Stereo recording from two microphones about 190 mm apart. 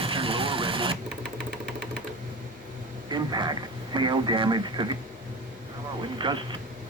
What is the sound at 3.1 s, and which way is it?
Radio, 20° right (ahead or behind).